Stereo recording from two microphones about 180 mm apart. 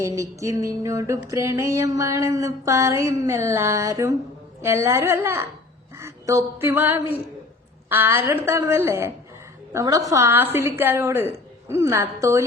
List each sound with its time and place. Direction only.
0.0 s music: 15° right (ahead or behind)
6.0 s a sound: 15° right (ahead or behind)
7.9 s music: 10° right (ahead or behind)